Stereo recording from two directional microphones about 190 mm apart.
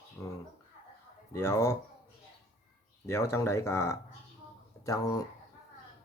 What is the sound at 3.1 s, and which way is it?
Speech, 15° left (ahead or behind).